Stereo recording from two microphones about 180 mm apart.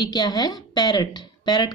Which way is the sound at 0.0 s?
20° left (ahead or behind).